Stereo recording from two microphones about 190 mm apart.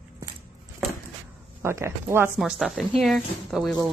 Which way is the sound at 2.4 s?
Centre (ahead or behind).